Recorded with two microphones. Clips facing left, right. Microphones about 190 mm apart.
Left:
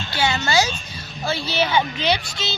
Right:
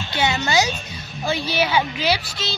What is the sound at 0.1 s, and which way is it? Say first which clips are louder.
A woman's voice: even; 20° right (ahead or behind).